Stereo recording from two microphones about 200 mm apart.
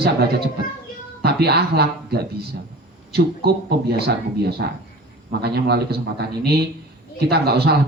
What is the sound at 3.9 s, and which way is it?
Speech, 55° right (ahead or behind).